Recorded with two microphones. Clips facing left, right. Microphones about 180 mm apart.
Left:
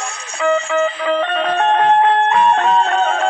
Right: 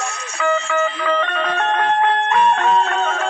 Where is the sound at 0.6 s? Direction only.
15° left (ahead or behind).